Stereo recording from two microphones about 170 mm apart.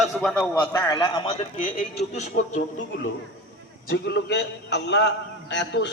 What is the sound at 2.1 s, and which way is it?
Speech, 45° left (ahead or behind).